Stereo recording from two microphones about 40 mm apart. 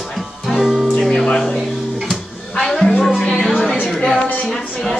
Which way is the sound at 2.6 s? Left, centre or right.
Centre.